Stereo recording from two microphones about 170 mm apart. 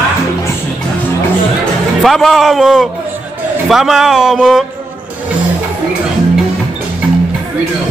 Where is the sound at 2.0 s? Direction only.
Centre (ahead or behind).